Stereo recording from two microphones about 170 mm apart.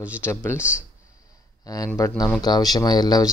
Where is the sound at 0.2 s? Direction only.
15° left (ahead or behind).